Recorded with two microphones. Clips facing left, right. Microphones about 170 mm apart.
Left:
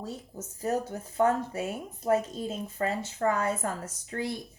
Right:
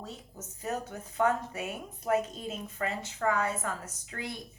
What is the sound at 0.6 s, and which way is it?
A woman's voice, 35° left (ahead or behind).